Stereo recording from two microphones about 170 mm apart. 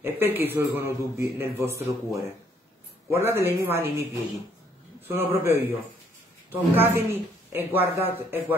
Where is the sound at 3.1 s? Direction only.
15° right (ahead or behind).